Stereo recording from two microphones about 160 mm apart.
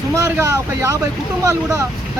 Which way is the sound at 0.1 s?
20° right (ahead or behind).